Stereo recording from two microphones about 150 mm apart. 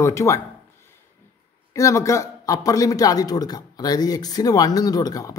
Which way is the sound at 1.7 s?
20° left (ahead or behind).